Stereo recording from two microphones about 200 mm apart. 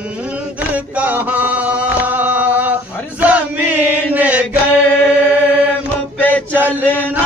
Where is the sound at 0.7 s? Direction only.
10° right (ahead or behind).